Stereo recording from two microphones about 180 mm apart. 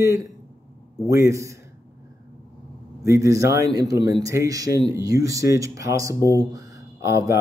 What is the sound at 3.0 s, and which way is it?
Speech, 15° right (ahead or behind).